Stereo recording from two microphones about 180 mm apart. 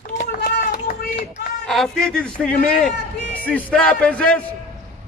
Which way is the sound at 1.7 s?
Centre (ahead or behind).